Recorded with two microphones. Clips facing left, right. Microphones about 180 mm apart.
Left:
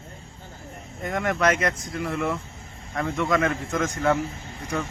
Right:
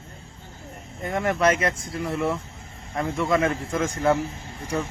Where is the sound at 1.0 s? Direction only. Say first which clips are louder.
Right 1 dB; 30° right (ahead or behind).